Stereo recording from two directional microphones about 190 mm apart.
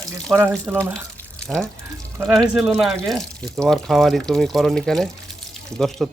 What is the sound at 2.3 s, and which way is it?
Speech, centre (ahead or behind).